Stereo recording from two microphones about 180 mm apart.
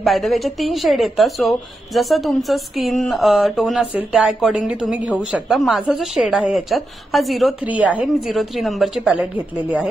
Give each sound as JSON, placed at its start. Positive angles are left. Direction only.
{"t": 0.0, "sound": "a woman's voice", "side_deg": 0}